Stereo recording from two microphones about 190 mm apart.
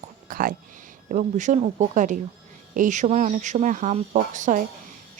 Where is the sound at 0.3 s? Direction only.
50° right (ahead or behind).